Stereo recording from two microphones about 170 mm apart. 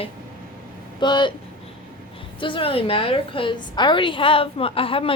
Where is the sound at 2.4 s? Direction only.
30° left (ahead or behind).